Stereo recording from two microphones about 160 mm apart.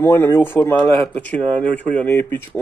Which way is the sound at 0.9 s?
40° right (ahead or behind).